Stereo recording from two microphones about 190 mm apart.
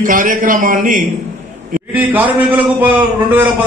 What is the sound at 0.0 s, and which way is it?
A man's voice, 45° right (ahead or behind).